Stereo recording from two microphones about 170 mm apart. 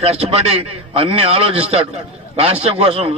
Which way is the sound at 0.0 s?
35° right (ahead or behind).